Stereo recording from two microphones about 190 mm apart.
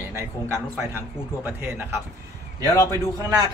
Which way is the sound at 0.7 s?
10° right (ahead or behind).